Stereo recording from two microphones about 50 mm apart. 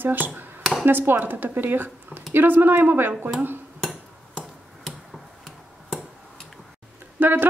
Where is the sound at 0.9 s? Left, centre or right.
Right.